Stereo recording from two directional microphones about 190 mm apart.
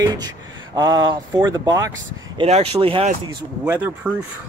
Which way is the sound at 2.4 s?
30° right (ahead or behind).